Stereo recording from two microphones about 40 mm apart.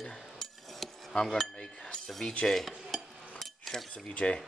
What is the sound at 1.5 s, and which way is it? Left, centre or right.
Cutlery, left.